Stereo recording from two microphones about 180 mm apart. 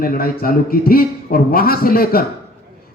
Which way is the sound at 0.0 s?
55° left (ahead or behind).